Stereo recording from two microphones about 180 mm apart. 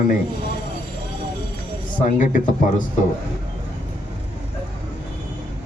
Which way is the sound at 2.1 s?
45° left (ahead or behind).